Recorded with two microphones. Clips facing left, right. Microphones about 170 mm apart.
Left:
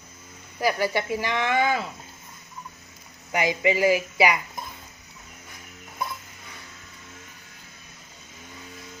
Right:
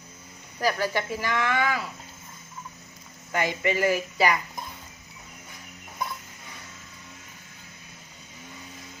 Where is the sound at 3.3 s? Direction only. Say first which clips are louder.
Left 3 dB; 15° left (ahead or behind).